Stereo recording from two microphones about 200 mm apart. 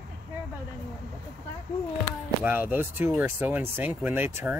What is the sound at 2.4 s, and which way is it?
Speech, 10° right (ahead or behind).